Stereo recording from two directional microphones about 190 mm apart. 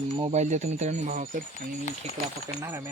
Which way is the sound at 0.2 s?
35° right (ahead or behind).